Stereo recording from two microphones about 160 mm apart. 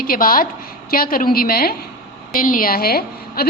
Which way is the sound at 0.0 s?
65° left (ahead or behind).